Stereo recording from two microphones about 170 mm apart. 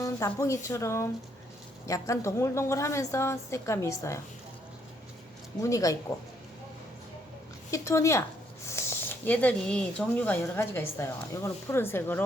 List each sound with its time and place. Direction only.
0.0 s a woman's voice: 20° left (ahead or behind)
5.6 s speech: 20° left (ahead or behind)
7.7 s a woman's voice: 15° left (ahead or behind)